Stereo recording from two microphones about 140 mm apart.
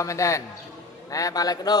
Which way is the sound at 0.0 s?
20° left (ahead or behind).